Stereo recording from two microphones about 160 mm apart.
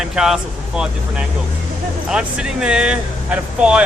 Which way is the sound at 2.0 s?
5° right (ahead or behind).